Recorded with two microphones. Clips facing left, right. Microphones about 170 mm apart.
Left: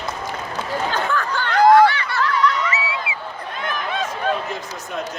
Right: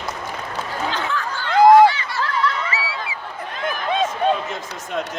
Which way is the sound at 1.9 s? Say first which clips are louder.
Even; 60° left (ahead or behind).